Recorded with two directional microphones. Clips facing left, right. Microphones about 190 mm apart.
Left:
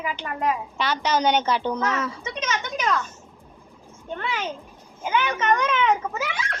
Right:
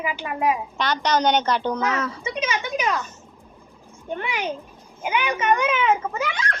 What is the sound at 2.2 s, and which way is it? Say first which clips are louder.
Speech: right 3 dB; 10° right (ahead or behind).